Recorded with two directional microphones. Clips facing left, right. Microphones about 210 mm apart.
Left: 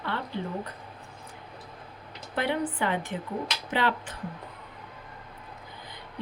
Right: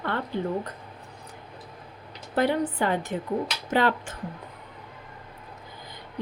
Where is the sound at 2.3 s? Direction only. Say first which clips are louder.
Right 4 dB; 40° right (ahead or behind).